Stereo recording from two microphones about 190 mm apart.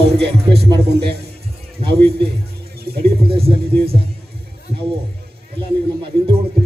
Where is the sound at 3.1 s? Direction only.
30° right (ahead or behind).